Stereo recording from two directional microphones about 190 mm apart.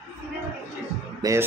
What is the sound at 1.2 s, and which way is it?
Speech, 15° right (ahead or behind).